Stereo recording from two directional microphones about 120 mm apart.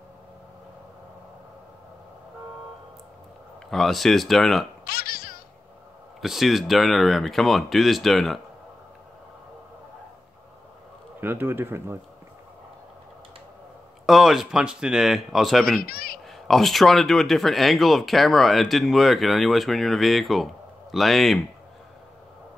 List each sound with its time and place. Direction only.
3.7 s speech: centre (ahead or behind)
6.2 s speech: centre (ahead or behind)
11.1 s speech: 15° right (ahead or behind)
14.0 s speech: centre (ahead or behind)